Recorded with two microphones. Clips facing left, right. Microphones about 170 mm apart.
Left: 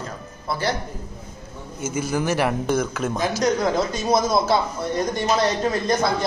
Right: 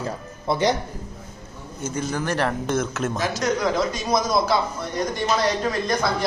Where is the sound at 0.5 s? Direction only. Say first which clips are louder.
Right 4 dB; 15° right (ahead or behind).